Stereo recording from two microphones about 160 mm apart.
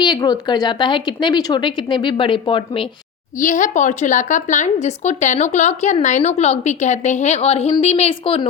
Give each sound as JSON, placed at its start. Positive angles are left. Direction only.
{"t": 0.0, "sound": "a woman's voice", "side_deg": 25}
{"t": 3.4, "sound": "speech", "side_deg": 50}